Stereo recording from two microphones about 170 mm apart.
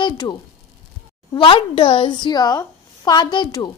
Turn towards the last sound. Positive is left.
turn(degrees=25)  # may be behind; listen again after turning